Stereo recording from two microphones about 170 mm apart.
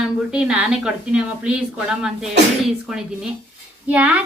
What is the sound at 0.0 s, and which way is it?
Speech, 5° right (ahead or behind).